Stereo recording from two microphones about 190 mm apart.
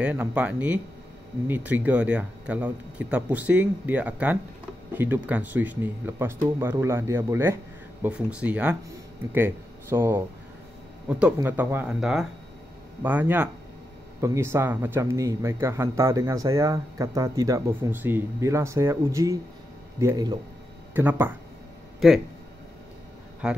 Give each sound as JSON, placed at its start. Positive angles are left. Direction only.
{"t": 0.0, "sound": "speech", "side_deg": -10}
{"t": 23.4, "sound": "speech", "side_deg": -5}